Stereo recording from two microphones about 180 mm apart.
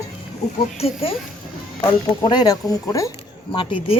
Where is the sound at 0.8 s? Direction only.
35° left (ahead or behind).